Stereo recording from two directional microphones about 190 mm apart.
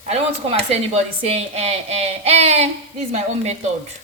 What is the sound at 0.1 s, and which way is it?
Speech, 35° right (ahead or behind).